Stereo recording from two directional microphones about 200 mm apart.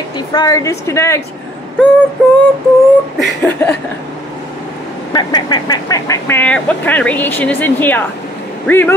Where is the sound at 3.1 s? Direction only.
5° left (ahead or behind).